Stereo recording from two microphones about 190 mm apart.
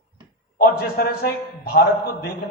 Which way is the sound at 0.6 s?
50° left (ahead or behind).